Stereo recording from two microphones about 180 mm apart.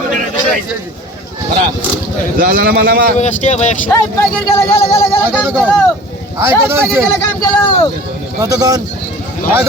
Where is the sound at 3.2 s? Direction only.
40° left (ahead or behind).